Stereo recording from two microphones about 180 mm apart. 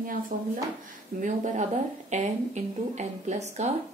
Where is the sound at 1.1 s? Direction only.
50° right (ahead or behind).